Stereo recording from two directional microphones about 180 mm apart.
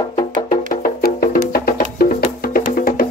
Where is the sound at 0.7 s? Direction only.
55° left (ahead or behind).